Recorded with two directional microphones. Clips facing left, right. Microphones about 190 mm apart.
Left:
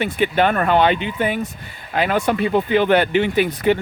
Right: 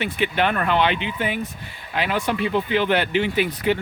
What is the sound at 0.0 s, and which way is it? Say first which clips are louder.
Speech: left 4 dB; 45° left (ahead or behind).